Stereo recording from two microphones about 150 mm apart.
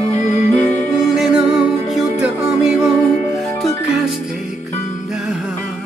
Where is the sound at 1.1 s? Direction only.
Centre (ahead or behind).